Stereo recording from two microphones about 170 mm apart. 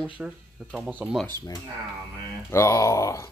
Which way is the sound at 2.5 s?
15° left (ahead or behind).